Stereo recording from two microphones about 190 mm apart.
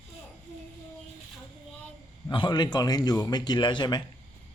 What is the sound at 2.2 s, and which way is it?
Speech, 25° left (ahead or behind).